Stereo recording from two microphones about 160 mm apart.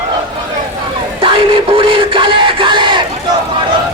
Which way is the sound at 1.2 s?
35° right (ahead or behind).